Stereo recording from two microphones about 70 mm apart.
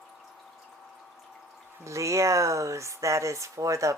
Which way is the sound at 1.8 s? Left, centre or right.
Right.